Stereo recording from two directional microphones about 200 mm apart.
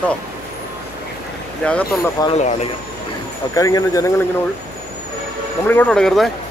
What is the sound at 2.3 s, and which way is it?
Speech, 35° left (ahead or behind).